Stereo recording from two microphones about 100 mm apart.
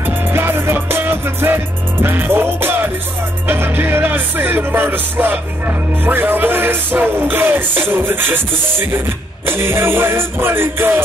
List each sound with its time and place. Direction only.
0.0 s music: 20° right (ahead or behind)